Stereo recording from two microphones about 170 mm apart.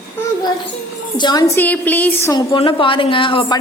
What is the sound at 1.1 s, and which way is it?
Speech, 25° left (ahead or behind).